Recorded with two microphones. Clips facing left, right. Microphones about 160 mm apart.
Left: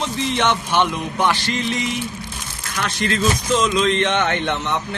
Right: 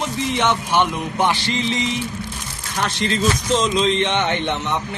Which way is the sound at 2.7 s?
30° right (ahead or behind).